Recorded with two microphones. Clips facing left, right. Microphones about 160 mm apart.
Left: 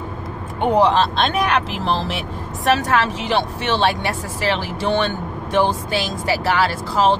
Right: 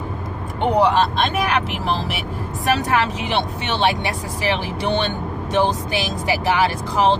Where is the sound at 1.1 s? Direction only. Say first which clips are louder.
Left 1 dB; 5° right (ahead or behind).